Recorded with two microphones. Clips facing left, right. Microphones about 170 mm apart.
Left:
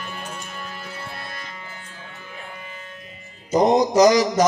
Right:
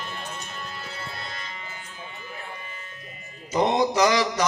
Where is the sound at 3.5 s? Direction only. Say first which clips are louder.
Left 5 dB; 40° left (ahead or behind).